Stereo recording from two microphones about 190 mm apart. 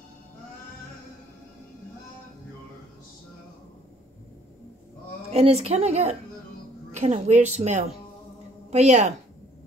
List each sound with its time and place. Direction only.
5.3 s a woman's voice: 35° right (ahead or behind)